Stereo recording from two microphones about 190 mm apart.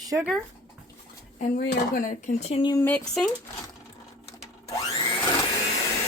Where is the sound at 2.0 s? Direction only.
40° left (ahead or behind).